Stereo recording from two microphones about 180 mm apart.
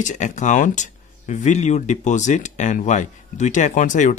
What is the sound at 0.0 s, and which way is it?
Speech, 40° left (ahead or behind).